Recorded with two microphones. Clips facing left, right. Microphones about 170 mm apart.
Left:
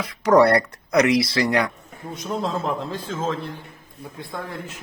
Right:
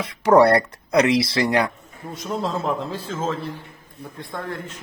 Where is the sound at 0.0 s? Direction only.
25° right (ahead or behind).